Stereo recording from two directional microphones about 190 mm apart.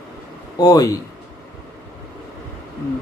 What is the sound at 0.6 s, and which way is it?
Speech, 20° left (ahead or behind).